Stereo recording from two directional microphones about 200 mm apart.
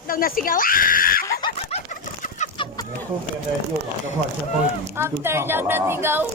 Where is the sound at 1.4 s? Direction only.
30° left (ahead or behind).